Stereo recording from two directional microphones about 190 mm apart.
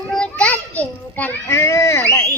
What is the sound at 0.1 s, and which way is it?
Children playing, 5° left (ahead or behind).